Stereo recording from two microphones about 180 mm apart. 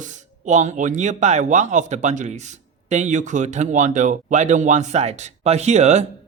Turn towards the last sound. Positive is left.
turn(degrees=-40)  # may be behind; listen again after turning